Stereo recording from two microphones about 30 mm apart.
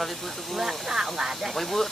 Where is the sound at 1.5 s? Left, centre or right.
Centre.